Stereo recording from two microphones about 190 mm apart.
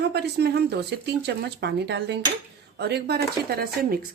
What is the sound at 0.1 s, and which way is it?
A woman's voice, 60° right (ahead or behind).